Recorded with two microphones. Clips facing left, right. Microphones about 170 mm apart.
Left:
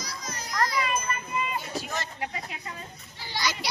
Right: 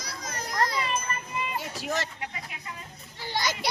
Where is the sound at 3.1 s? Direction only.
50° right (ahead or behind).